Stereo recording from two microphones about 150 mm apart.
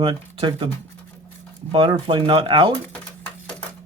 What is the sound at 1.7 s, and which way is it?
Speech, 35° right (ahead or behind).